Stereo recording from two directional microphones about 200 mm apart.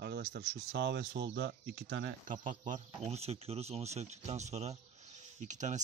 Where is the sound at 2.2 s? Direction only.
40° right (ahead or behind).